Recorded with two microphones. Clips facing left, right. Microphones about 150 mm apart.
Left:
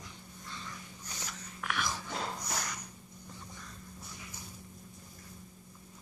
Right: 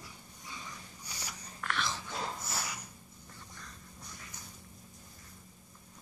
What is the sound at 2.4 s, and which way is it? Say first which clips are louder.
Snort: left 1 dB; 5° right (ahead or behind).